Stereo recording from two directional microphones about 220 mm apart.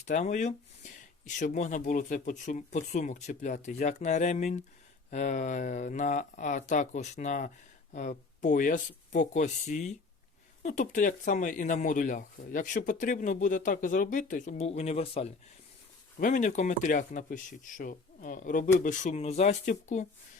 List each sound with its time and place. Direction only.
0.0 s speech: 35° left (ahead or behind)